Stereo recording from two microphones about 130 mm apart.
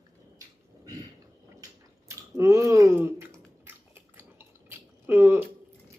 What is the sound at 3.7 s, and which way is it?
Chewing, 15° right (ahead or behind).